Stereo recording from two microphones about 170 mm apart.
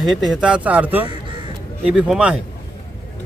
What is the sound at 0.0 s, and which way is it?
A man's voice, centre (ahead or behind).